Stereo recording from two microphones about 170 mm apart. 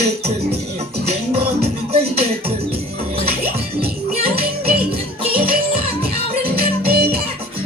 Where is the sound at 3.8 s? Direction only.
35° right (ahead or behind).